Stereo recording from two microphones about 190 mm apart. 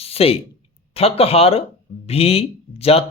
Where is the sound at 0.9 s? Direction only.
30° left (ahead or behind).